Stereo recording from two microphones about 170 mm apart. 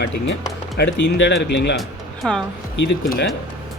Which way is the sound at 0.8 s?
90° left.